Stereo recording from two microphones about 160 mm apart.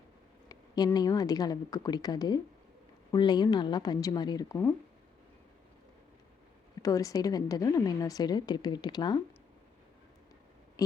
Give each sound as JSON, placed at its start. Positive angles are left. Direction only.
{"t": 0.4, "sound": "a woman's voice", "side_deg": 25}
{"t": 6.8, "sound": "a woman's voice", "side_deg": 20}
{"t": 10.8, "sound": "a woman's voice", "side_deg": 25}